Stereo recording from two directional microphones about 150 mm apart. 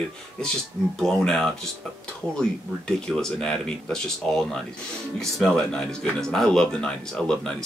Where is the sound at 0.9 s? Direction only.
5° left (ahead or behind).